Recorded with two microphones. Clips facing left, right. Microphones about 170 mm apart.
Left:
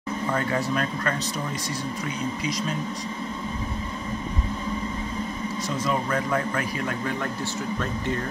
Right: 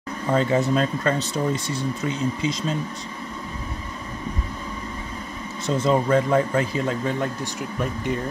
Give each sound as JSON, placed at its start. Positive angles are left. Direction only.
{"t": 0.3, "sound": "speech", "side_deg": -20}
{"t": 5.8, "sound": "speech", "side_deg": -25}